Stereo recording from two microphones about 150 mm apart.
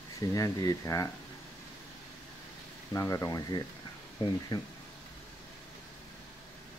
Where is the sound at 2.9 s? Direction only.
20° left (ahead or behind).